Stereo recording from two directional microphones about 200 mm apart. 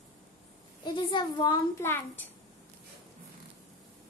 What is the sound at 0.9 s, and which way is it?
A child's voice, 25° left (ahead or behind).